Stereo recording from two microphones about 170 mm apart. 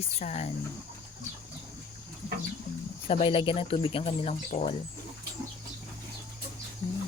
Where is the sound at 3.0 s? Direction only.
35° left (ahead or behind).